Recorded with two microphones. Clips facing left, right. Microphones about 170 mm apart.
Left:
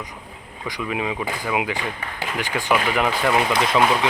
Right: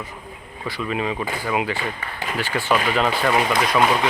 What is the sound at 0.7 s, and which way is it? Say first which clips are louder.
Speech: right 1 dB; 15° left (ahead or behind).